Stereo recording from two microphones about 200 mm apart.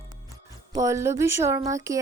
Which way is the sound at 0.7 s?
15° right (ahead or behind).